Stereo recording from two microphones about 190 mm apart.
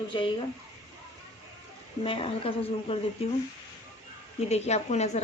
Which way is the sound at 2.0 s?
30° left (ahead or behind).